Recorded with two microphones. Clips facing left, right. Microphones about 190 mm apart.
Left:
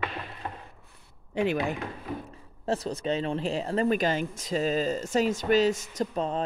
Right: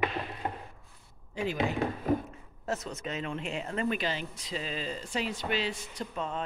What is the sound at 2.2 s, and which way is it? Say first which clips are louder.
Speech: left 5 dB; 35° left (ahead or behind).